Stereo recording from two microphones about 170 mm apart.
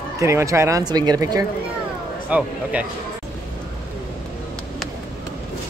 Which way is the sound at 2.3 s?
10° right (ahead or behind).